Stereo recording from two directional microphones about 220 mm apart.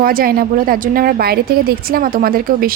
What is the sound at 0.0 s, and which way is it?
A woman's voice, 40° right (ahead or behind).